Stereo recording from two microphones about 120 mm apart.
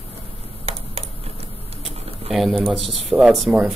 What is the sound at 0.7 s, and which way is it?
Computer keyboard, 60° right (ahead or behind).